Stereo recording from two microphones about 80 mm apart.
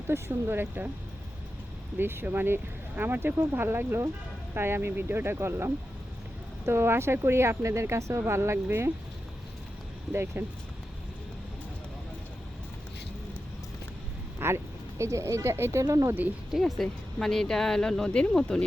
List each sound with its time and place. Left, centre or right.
0.1 s speech: right
2.0 s speech: right
10.1 s speech: right
14.3 s speech: right
16.5 s speech: centre